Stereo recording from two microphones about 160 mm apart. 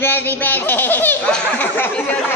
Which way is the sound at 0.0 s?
10° left (ahead or behind).